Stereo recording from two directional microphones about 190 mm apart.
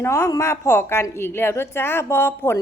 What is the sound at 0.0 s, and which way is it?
A woman's voice, 15° left (ahead or behind).